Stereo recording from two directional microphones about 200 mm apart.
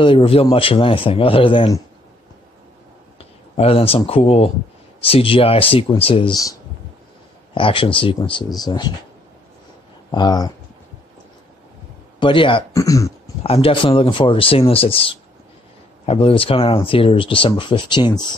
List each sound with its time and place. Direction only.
0.0 s speech: 25° left (ahead or behind)
3.5 s speech: 30° left (ahead or behind)
7.5 s speech: 25° left (ahead or behind)
10.1 s speech: 20° left (ahead or behind)
12.2 s speech: 25° left (ahead or behind)
13.4 s speech: 30° left (ahead or behind)